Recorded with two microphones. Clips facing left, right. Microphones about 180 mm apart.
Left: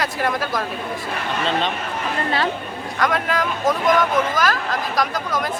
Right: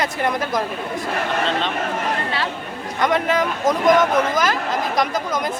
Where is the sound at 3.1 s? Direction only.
20° right (ahead or behind).